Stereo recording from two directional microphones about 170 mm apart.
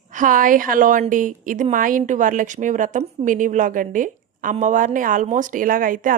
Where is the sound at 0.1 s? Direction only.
50° right (ahead or behind).